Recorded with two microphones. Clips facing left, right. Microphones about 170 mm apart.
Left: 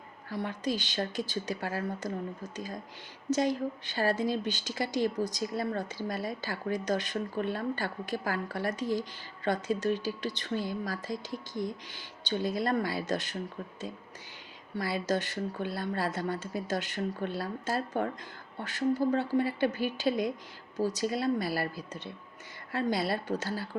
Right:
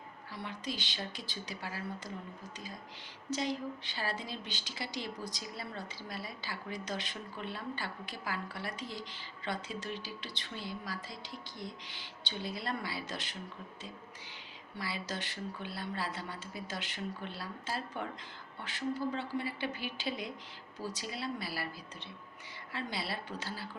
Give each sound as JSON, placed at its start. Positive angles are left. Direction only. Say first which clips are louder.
{"t": 0.3, "sound": "a woman's voice", "louder": "left 9 dB", "side_deg": 45}
{"t": 14.8, "sound": "a woman's voice", "louder": "left 10 dB", "side_deg": 45}